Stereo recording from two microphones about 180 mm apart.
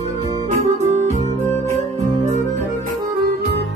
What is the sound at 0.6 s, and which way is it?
Music, 40° right (ahead or behind).